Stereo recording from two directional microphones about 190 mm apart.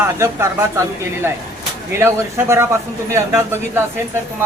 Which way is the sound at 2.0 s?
15° right (ahead or behind).